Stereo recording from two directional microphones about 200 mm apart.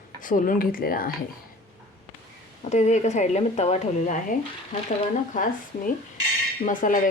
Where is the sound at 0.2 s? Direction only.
40° left (ahead or behind).